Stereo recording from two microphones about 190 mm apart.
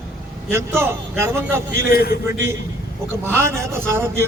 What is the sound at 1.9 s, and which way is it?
Speech, 55° left (ahead or behind).